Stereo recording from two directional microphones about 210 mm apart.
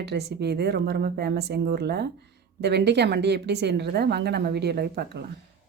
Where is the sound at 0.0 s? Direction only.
55° right (ahead or behind).